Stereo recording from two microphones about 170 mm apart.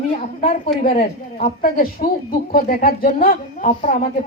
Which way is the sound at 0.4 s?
50° left (ahead or behind).